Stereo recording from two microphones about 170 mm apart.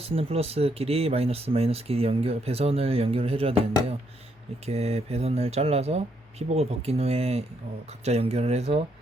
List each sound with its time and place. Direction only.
0.0 s speech: 35° right (ahead or behind)
4.6 s speech: 40° right (ahead or behind)